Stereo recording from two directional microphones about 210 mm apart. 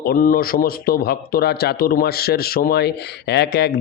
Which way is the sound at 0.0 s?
45° left (ahead or behind).